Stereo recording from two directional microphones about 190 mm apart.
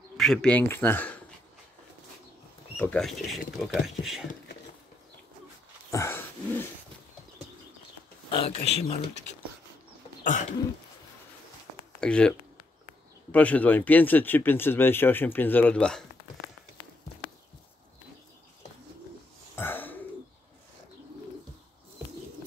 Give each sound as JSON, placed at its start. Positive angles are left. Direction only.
{"t": 0.2, "sound": "speech", "side_deg": 0}
{"t": 2.8, "sound": "speech", "side_deg": 5}
{"t": 5.9, "sound": "dog", "side_deg": 15}
{"t": 8.3, "sound": "speech", "side_deg": 30}
{"t": 12.0, "sound": "speech", "side_deg": 5}
{"t": 19.5, "sound": "bird", "side_deg": 10}